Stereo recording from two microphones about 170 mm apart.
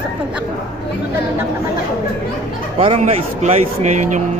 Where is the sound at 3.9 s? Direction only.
45° right (ahead or behind).